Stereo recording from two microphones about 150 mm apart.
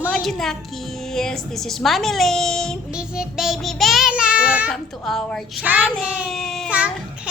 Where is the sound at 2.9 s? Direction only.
5° right (ahead or behind).